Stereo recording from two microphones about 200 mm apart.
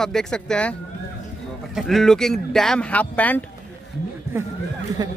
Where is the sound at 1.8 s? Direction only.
Centre (ahead or behind).